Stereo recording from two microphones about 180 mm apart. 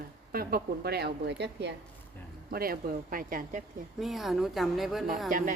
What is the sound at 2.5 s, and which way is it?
Speech, 55° right (ahead or behind).